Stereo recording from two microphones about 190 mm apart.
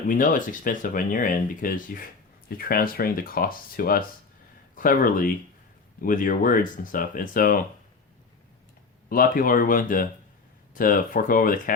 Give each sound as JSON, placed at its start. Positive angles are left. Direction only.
{"t": 0.1, "sound": "speech", "side_deg": 45}
{"t": 9.0, "sound": "speech", "side_deg": 50}